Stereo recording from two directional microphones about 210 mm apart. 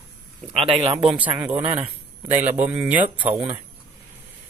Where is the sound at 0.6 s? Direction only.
25° right (ahead or behind).